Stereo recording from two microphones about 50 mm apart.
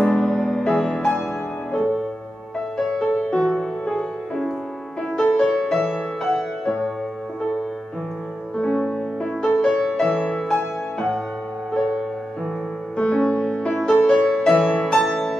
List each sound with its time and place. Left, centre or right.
0.0 s music: left
3.2 s music: centre
5.1 s music: centre
5.5 s music: centre
8.5 s music: centre
10.2 s music: centre
11.7 s music: centre
13.7 s music: centre